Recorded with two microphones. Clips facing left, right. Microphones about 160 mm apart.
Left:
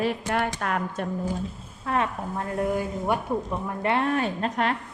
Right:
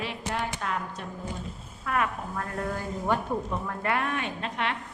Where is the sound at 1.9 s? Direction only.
30° left (ahead or behind).